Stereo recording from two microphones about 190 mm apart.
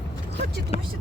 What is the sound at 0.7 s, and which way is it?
Speech, 30° left (ahead or behind).